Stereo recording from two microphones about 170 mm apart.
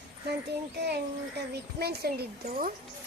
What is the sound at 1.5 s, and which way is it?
Speech, 70° right (ahead or behind).